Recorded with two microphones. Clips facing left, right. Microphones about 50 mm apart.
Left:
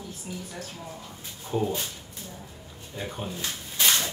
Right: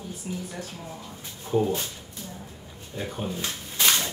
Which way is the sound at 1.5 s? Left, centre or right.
Centre.